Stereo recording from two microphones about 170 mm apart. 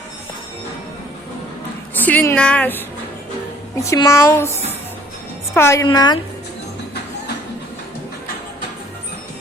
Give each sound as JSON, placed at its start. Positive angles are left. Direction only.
{"t": 2.0, "sound": "a woman's voice", "side_deg": 10}
{"t": 5.5, "sound": "a woman's voice", "side_deg": 15}